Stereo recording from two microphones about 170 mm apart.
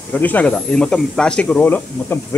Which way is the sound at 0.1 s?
10° left (ahead or behind).